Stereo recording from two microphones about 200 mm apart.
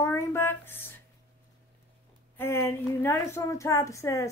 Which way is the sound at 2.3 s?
10° left (ahead or behind).